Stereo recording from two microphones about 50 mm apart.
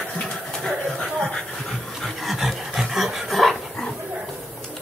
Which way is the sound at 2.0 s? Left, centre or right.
Centre.